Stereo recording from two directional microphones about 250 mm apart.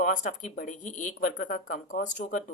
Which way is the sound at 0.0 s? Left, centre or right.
Left.